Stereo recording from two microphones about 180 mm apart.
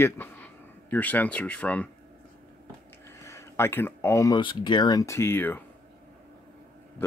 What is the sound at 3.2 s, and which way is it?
Speech, 15° left (ahead or behind).